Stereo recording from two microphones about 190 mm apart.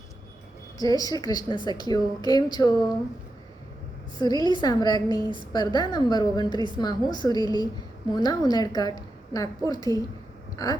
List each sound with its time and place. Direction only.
0.8 s a woman's voice: 20° left (ahead or behind)
4.2 s a woman's voice: 20° left (ahead or behind)